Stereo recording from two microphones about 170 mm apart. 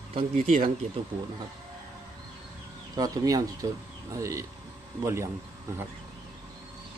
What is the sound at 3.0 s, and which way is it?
Speech, 20° right (ahead or behind).